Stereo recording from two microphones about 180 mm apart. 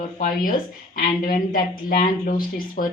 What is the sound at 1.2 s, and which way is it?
Speech, 50° left (ahead or behind).